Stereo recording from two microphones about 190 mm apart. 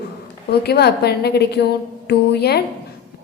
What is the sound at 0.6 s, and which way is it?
A woman's voice, 55° left (ahead or behind).